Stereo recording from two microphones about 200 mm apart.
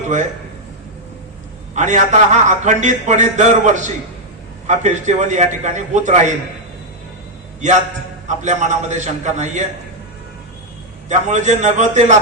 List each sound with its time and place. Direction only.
1.7 s a man's voice: 35° right (ahead or behind)
7.6 s a man's voice: 40° right (ahead or behind)
11.1 s a man's voice: 35° right (ahead or behind)